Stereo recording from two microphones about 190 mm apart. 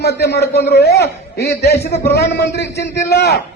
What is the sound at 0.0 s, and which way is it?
A man's voice, 60° left (ahead or behind).